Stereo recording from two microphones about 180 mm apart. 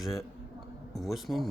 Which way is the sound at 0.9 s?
Centre (ahead or behind).